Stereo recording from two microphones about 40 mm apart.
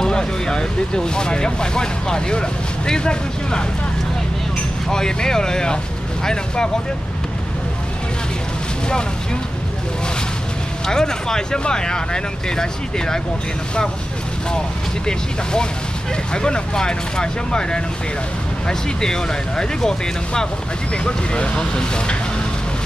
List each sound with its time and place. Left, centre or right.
0.0 s speech: centre
4.8 s speech: centre
10.9 s speech: centre
15.0 s speech: centre